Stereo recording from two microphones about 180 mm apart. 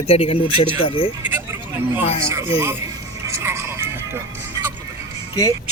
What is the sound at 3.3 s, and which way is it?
Vehicle, 15° right (ahead or behind).